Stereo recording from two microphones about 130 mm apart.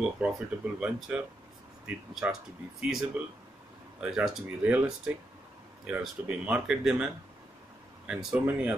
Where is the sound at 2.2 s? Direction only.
10° right (ahead or behind).